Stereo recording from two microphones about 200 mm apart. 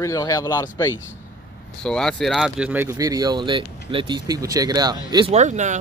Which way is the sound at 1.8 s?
5° left (ahead or behind).